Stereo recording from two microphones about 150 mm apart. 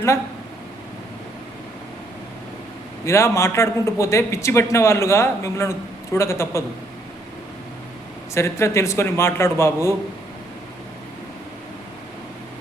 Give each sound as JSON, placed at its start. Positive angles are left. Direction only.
{"t": 3.1, "sound": "a man's voice", "side_deg": 20}
{"t": 8.4, "sound": "a man's voice", "side_deg": 20}